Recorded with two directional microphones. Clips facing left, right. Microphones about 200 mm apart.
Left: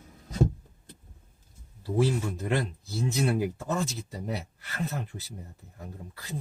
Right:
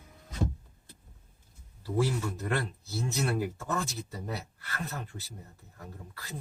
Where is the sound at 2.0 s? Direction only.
20° left (ahead or behind).